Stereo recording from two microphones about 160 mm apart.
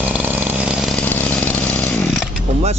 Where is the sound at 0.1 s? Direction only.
10° right (ahead or behind).